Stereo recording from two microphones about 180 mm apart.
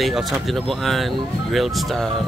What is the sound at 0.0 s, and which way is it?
Speech, centre (ahead or behind).